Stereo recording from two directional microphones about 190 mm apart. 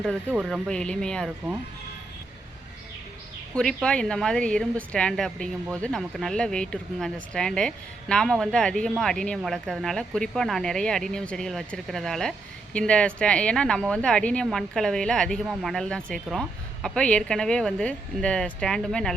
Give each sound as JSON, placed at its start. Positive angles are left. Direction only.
{"t": 0.0, "sound": "speech", "side_deg": 5}
{"t": 3.5, "sound": "speech", "side_deg": 5}